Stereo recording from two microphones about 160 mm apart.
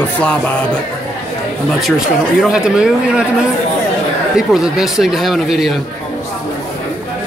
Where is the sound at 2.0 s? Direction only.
5° right (ahead or behind).